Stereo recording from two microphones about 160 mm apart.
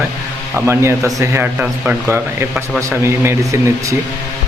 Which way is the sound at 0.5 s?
15° right (ahead or behind).